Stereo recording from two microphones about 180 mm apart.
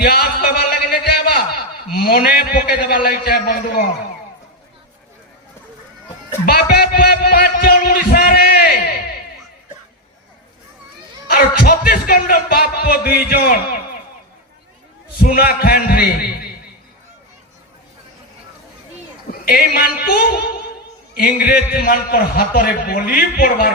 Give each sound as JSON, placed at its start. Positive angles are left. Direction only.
{"t": 0.0, "sound": "a sound", "side_deg": 60}
{"t": 1.9, "sound": "a man's voice", "side_deg": 60}
{"t": 6.4, "sound": "music", "side_deg": 60}
{"t": 11.3, "sound": "a man's voice", "side_deg": 55}
{"t": 15.2, "sound": "a man's voice", "side_deg": 55}
{"t": 19.3, "sound": "a man's voice", "side_deg": 55}